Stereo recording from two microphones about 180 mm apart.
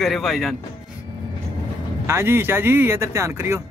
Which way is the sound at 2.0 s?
15° right (ahead or behind).